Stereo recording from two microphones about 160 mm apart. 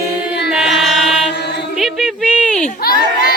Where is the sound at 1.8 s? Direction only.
Centre (ahead or behind).